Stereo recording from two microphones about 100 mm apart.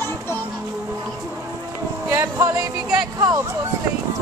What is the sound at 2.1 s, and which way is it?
Music, 30° right (ahead or behind).